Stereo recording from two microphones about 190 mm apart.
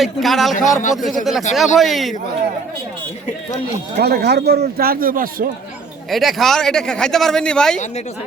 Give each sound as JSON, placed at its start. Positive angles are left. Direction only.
{"t": 0.0, "sound": "speech", "side_deg": 0}
{"t": 0.5, "sound": "a man's voice", "side_deg": 40}
{"t": 1.2, "sound": "speech", "side_deg": 0}
{"t": 3.9, "sound": "speech", "side_deg": -55}
{"t": 6.1, "sound": "speech", "side_deg": 0}